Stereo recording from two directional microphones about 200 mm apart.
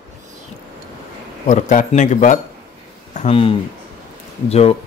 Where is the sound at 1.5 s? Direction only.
40° left (ahead or behind).